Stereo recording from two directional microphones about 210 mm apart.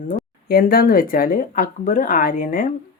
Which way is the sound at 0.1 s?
45° left (ahead or behind).